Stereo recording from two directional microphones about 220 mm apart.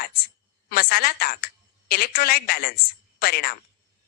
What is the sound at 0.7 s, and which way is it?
A woman's voice, 45° left (ahead or behind).